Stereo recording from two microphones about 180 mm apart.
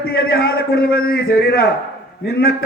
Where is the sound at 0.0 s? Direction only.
55° left (ahead or behind).